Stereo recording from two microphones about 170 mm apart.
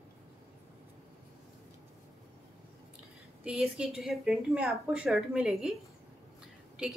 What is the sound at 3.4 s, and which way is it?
A woman's voice, 5° right (ahead or behind).